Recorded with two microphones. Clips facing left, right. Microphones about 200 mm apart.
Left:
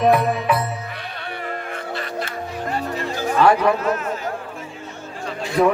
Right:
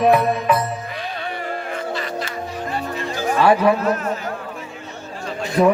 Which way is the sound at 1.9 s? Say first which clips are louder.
Right 2 dB; 55° left (ahead or behind).